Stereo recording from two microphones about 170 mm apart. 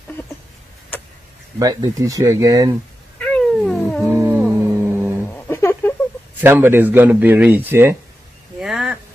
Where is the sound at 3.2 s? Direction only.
5° left (ahead or behind).